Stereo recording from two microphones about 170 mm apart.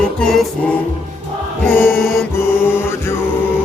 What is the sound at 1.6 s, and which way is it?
Mantra, 15° left (ahead or behind).